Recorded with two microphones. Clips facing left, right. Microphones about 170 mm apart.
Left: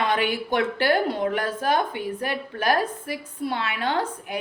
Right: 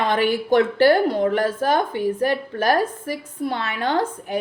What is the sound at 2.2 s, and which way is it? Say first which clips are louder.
A woman's voice: right 3 dB; 45° right (ahead or behind).